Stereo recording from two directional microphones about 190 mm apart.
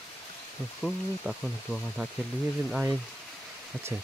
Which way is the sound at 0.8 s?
Centre (ahead or behind).